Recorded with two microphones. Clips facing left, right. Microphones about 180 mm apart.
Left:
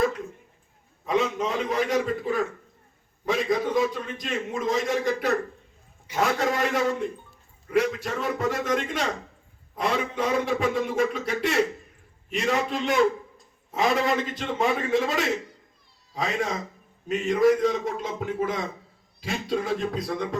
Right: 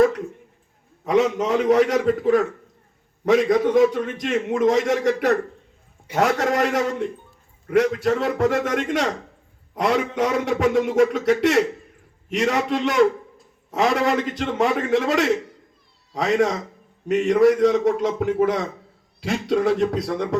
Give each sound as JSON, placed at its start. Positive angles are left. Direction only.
{"t": 1.0, "sound": "a man's voice", "side_deg": -75}